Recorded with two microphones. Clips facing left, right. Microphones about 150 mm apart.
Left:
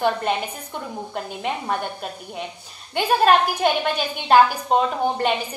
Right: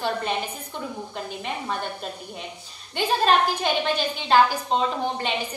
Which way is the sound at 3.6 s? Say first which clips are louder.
Left 3 dB; 55° left (ahead or behind).